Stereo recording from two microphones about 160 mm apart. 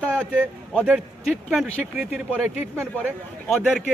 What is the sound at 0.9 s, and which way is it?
Speech, 5° right (ahead or behind).